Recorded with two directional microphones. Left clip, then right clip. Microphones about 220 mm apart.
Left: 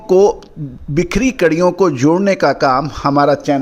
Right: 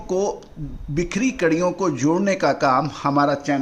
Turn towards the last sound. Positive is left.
turn(degrees=35)  # may be behind; listen again after turning